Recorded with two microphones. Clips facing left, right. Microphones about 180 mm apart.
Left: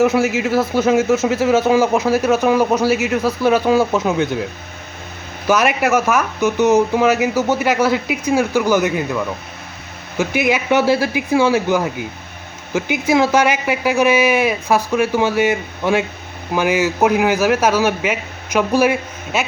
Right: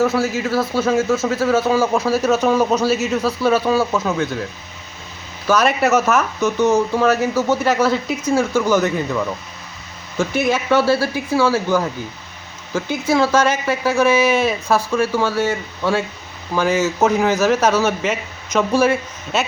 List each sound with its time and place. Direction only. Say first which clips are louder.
0.0 s a man's voice: left 3 dB; 20° left (ahead or behind)
5.5 s a man's voice: even; 15° left (ahead or behind)